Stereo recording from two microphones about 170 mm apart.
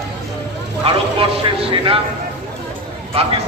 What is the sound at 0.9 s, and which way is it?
A man's voice, 35° right (ahead or behind).